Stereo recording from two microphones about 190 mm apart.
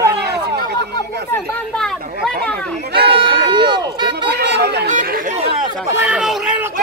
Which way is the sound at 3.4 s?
25° right (ahead or behind).